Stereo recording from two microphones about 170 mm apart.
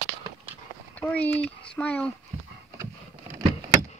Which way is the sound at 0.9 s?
10° left (ahead or behind).